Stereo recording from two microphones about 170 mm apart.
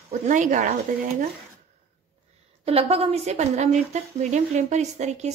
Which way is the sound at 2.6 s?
35° right (ahead or behind).